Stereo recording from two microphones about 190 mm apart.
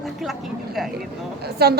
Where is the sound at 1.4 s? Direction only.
55° right (ahead or behind).